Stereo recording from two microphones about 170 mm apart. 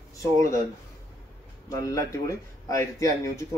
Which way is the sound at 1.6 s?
20° left (ahead or behind).